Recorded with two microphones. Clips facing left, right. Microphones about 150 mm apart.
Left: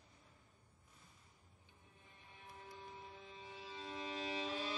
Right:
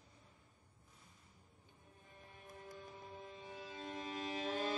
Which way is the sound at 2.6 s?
45° right (ahead or behind).